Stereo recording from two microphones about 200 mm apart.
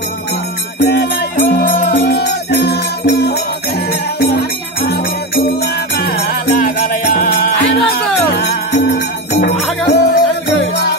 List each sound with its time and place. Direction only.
0.7 s music: 60° left (ahead or behind)